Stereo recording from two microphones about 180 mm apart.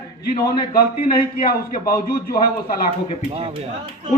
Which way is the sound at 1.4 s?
55° left (ahead or behind).